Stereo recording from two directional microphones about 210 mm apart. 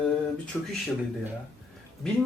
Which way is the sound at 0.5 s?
5° left (ahead or behind).